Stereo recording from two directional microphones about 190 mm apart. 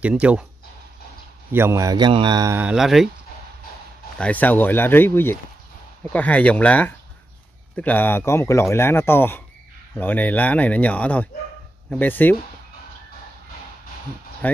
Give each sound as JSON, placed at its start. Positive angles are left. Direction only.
{"t": 0.0, "sound": "a man's voice", "side_deg": -5}
{"t": 1.5, "sound": "a man's voice", "side_deg": -15}
{"t": 2.6, "sound": "speech", "side_deg": 0}
{"t": 4.2, "sound": "speech", "side_deg": 10}
{"t": 14.4, "sound": "speech", "side_deg": 10}